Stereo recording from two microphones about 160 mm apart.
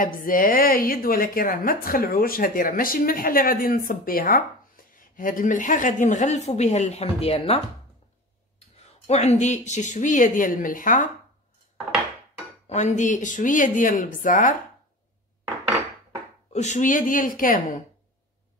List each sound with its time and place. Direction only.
0.0 s a woman's voice: 60° left (ahead or behind); by 7.6 s 40° left (ahead or behind)
9.0 s a woman's voice: 45° left (ahead or behind)
12.6 s a woman's voice: 45° left (ahead or behind)
16.5 s a woman's voice: 45° left (ahead or behind)